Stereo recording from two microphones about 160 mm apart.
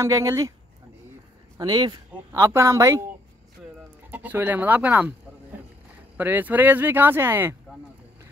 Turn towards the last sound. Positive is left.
turn(degrees=-15)  # may be behind; listen again after turning